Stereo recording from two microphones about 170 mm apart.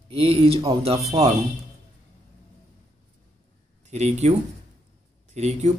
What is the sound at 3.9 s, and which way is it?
Speech, 40° right (ahead or behind).